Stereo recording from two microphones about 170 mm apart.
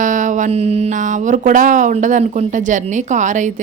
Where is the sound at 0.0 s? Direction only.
50° right (ahead or behind).